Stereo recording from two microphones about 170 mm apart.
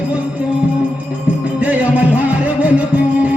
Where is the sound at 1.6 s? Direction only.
10° right (ahead or behind).